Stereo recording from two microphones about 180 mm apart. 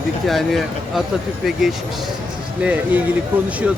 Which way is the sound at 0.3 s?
Centre (ahead or behind).